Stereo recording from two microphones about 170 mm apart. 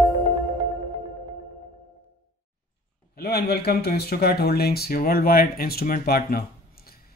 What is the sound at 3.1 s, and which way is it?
Speech, 65° left (ahead or behind).